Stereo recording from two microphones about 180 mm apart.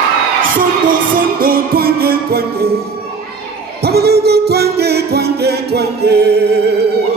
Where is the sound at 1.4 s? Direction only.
55° right (ahead or behind).